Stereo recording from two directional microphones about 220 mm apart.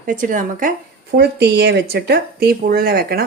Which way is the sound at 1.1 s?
50° right (ahead or behind).